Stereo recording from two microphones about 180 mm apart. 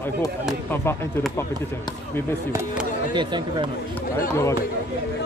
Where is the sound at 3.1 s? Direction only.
25° right (ahead or behind).